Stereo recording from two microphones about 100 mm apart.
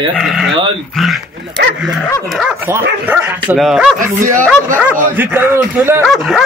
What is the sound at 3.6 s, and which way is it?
Speech, 5° right (ahead or behind).